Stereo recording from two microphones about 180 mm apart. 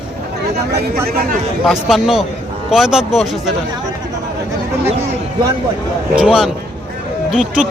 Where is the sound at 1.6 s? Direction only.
Centre (ahead or behind).